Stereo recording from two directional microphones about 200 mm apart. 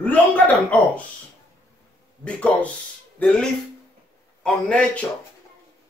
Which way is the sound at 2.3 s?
5° left (ahead or behind).